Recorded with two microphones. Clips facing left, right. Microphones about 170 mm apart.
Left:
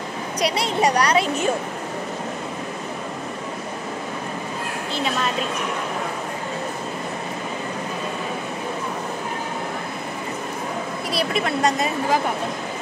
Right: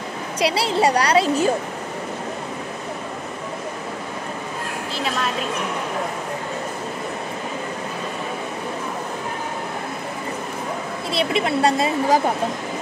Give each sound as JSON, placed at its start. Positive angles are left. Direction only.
{"t": 0.4, "sound": "a woman's voice", "side_deg": -30}
{"t": 11.1, "sound": "a woman's voice", "side_deg": -25}